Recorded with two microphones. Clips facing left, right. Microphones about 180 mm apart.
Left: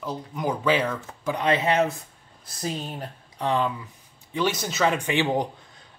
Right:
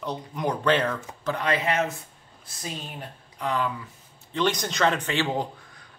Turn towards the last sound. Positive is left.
turn(degrees=15)  # may be behind; listen again after turning